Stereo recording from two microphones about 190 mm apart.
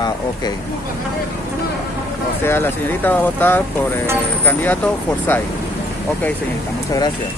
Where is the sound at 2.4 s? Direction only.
10° left (ahead or behind).